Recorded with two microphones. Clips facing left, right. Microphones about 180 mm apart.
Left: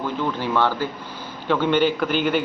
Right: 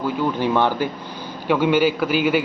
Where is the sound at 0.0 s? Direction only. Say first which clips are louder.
Right 4 dB; 10° right (ahead or behind).